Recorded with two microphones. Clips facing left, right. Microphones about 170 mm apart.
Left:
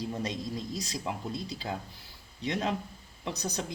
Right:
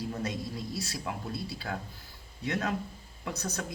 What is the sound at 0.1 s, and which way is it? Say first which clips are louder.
Speech: left 1 dB; 15° left (ahead or behind).